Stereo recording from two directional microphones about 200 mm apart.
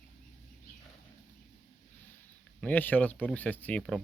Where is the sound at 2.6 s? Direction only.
10° left (ahead or behind).